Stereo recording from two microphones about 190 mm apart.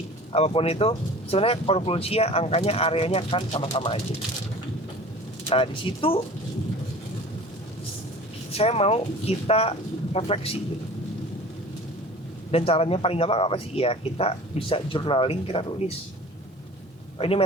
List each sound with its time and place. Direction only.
0.3 s speech: 30° left (ahead or behind)
5.5 s speech: 30° left (ahead or behind)
8.5 s speech: 30° left (ahead or behind)
12.5 s speech: 30° left (ahead or behind)
17.2 s speech: 30° left (ahead or behind)